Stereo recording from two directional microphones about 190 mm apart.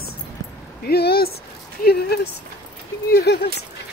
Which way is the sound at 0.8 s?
55° left (ahead or behind).